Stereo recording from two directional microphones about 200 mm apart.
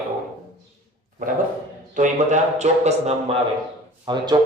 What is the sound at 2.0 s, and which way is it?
A man's voice, 35° right (ahead or behind).